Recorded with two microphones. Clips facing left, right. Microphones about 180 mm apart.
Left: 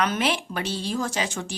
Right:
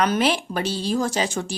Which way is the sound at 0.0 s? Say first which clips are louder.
Right 4 dB; 35° right (ahead or behind).